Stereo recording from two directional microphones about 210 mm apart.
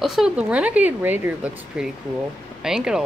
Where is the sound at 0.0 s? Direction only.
Centre (ahead or behind).